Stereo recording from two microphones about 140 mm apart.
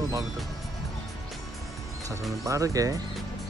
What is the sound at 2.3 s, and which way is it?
Speech, 25° right (ahead or behind).